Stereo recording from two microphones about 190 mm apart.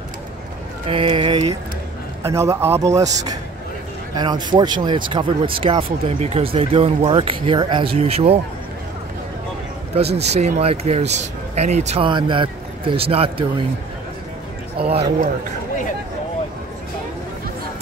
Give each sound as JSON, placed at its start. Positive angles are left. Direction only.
{"t": 0.8, "sound": "a man's voice", "side_deg": -30}
{"t": 10.1, "sound": "speech", "side_deg": -35}
{"t": 14.8, "sound": "speech", "side_deg": -30}